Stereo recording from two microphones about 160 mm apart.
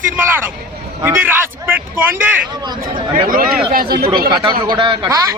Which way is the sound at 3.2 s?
60° right (ahead or behind).